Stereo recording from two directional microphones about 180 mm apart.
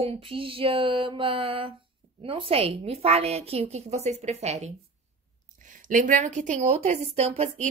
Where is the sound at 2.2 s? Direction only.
30° right (ahead or behind).